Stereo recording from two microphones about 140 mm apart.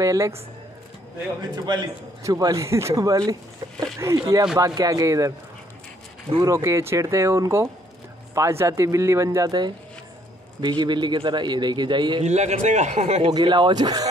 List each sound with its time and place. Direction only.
0.0 s a man's voice: 20° right (ahead or behind)
1.5 s a man's voice: 30° right (ahead or behind)
6.4 s a man's voice: 20° right (ahead or behind)
12.2 s a man's voice: 50° right (ahead or behind)
13.3 s a man's voice: 30° right (ahead or behind)